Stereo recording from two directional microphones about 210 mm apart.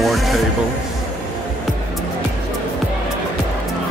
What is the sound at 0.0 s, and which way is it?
Music, centre (ahead or behind).